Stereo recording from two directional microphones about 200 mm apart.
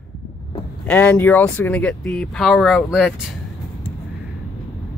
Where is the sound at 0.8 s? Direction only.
10° left (ahead or behind).